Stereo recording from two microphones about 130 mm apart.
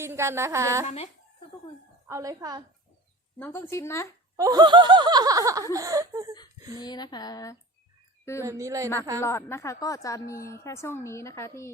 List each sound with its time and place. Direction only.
0.0 s a woman's voice: 20° right (ahead or behind)
2.0 s a woman's voice: 25° right (ahead or behind)
3.3 s a woman's voice: 15° left (ahead or behind)
4.4 s snicker: 30° right (ahead or behind)
5.7 s a woman's voice: 30° right (ahead or behind)
6.7 s a sound: 35° left (ahead or behind)
8.2 s speech: 20° left (ahead or behind)
8.4 s a woman's voice: 25° right (ahead or behind)
9.2 s a woman's voice: 20° left (ahead or behind)